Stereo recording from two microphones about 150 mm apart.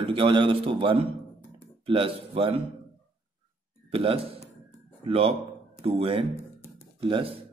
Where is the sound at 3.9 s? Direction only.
40° right (ahead or behind).